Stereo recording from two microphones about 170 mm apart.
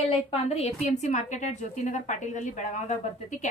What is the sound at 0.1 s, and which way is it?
A woman's voice, 35° left (ahead or behind).